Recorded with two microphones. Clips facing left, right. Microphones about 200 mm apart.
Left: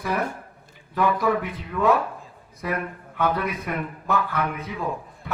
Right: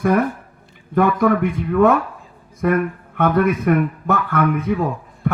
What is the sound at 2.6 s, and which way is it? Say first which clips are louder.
A man's voice: right 10 dB; 55° right (ahead or behind).